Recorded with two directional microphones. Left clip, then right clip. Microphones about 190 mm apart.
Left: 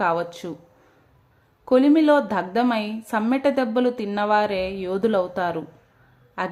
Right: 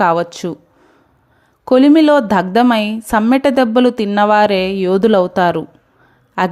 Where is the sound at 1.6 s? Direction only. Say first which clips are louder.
Right 7 dB; 45° right (ahead or behind).